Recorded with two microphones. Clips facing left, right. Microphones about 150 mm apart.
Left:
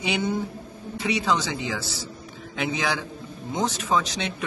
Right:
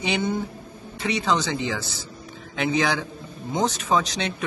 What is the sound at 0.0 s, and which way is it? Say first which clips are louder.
A man's voice: right 1 dB; 10° left (ahead or behind).